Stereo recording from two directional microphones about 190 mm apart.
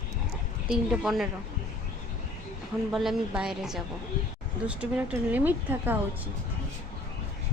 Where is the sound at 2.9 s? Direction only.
Centre (ahead or behind).